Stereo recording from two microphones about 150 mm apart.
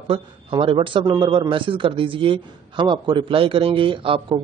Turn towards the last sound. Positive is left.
turn(degrees=-35)  # may be behind; listen again after turning